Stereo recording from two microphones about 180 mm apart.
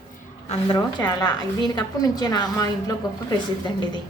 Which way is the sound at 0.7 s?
25° left (ahead or behind).